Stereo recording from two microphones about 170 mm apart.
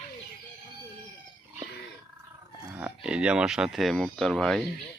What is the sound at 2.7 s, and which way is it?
Speech, 5° right (ahead or behind).